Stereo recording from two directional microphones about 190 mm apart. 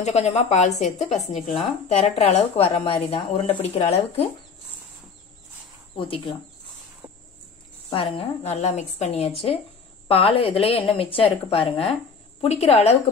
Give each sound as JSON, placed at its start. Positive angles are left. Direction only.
{"t": 0.0, "sound": "a woman's voice", "side_deg": 35}
{"t": 5.9, "sound": "a woman's voice", "side_deg": 30}
{"t": 7.9, "sound": "a woman's voice", "side_deg": 30}